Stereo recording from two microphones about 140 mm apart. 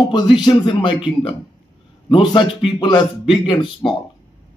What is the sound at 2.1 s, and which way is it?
A man's voice, 35° left (ahead or behind).